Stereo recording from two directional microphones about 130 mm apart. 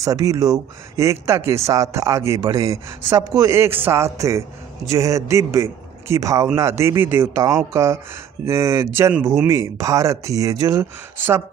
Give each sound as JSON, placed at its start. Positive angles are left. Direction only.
{"t": 0.0, "sound": "a man's voice", "side_deg": -25}